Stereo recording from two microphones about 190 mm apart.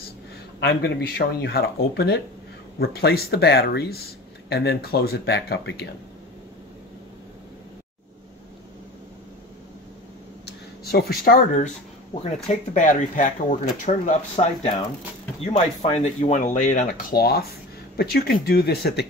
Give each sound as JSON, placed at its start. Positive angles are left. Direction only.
{"t": 0.6, "sound": "speech", "side_deg": 65}
{"t": 10.4, "sound": "speech", "side_deg": 55}
{"t": 12.7, "sound": "speech", "side_deg": 40}